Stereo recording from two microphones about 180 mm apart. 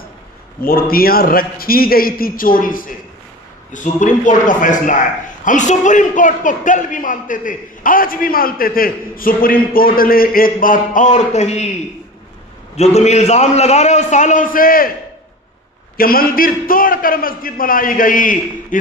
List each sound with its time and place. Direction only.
0.6 s a man's voice: 55° left (ahead or behind); by 11.7 s 35° left (ahead or behind)
12.7 s a man's voice: 35° left (ahead or behind)
16.0 s a man's voice: 55° left (ahead or behind)